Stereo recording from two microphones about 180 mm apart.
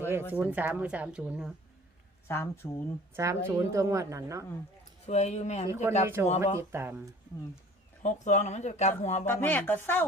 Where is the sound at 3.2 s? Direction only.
15° right (ahead or behind).